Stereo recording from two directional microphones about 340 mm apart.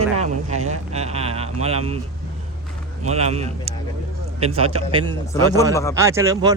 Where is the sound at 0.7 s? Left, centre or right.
Centre.